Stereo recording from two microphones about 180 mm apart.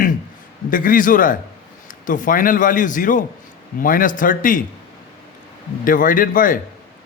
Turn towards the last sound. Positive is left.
turn(degrees=50)  # may be behind; listen again after turning